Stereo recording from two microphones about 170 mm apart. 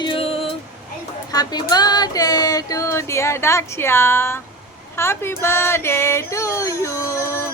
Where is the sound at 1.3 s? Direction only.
25° left (ahead or behind).